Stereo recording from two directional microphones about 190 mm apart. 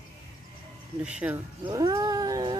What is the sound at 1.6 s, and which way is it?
Cat, 20° right (ahead or behind).